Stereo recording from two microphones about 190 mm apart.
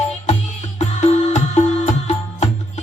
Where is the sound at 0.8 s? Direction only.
35° left (ahead or behind).